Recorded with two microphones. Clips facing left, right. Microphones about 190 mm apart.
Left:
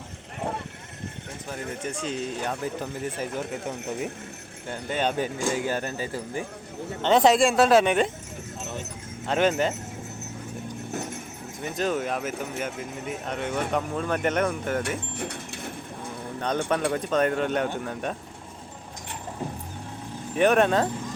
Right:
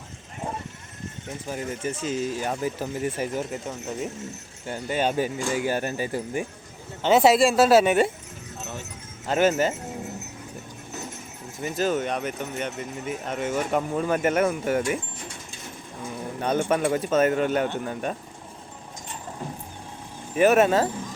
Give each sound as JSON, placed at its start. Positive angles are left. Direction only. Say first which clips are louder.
{"t": 0.3, "sound": "clip-clop", "louder": "left 2 dB", "side_deg": 60}
{"t": 1.5, "sound": "speech", "louder": "right 3 dB", "side_deg": -5}
{"t": 4.7, "sound": "speech", "louder": "right 2 dB", "side_deg": -10}
{"t": 9.2, "sound": "speech", "louder": "right 2 dB", "side_deg": -5}
{"t": 11.6, "sound": "speech", "louder": "right 2 dB", "side_deg": 0}
{"t": 14.8, "sound": "bird", "louder": "right 2 dB", "side_deg": 65}
{"t": 16.4, "sound": "speech", "louder": "right 3 dB", "side_deg": -10}
{"t": 20.3, "sound": "speech", "louder": "right 2 dB", "side_deg": -5}